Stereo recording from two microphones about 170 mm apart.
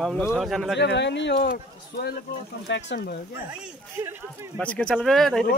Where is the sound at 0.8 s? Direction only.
90° left; by 2.1 s 70° left (ahead or behind).